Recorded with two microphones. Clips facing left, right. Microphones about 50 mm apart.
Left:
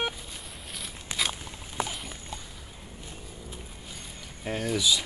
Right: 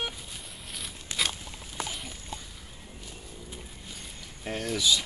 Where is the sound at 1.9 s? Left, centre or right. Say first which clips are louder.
Left 1 dB; centre.